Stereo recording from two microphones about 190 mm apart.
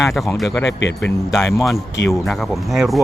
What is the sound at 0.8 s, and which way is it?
Speech, 70° left (ahead or behind).